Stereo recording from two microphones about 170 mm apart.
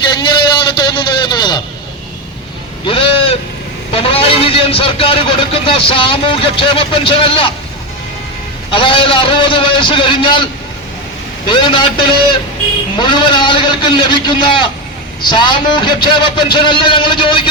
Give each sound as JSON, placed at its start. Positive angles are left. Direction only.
{"t": 0.1, "sound": "vehicle", "side_deg": 25}
{"t": 2.8, "sound": "a man's voice", "side_deg": 30}
{"t": 8.7, "sound": "a man's voice", "side_deg": 30}
{"t": 11.4, "sound": "a man's voice", "side_deg": 30}
{"t": 13.0, "sound": "a man's voice", "side_deg": 30}